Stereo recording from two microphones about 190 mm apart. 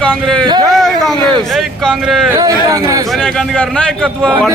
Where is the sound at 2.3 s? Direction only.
15° right (ahead or behind).